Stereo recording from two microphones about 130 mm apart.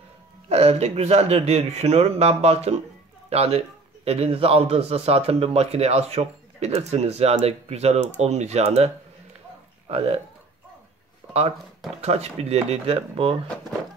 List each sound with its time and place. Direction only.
0.5 s a man's voice: 55° right (ahead or behind)
12.0 s a man's voice: 55° right (ahead or behind)